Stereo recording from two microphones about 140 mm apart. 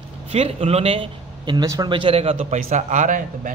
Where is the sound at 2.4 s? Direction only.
60° right (ahead or behind).